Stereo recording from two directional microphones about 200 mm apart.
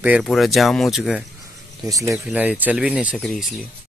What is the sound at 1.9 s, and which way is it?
Speech, 15° right (ahead or behind).